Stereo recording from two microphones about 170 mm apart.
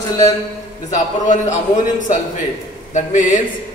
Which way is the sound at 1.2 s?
45° left (ahead or behind).